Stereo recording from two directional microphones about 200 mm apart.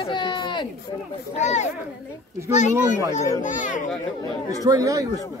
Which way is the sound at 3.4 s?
40° left (ahead or behind).